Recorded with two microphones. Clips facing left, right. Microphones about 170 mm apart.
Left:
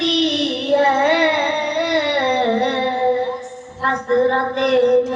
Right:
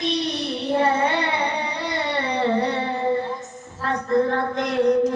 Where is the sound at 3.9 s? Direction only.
75° left (ahead or behind).